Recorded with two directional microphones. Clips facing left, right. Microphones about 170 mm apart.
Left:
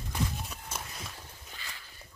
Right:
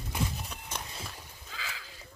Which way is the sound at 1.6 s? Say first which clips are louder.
Right 8 dB; 90° right.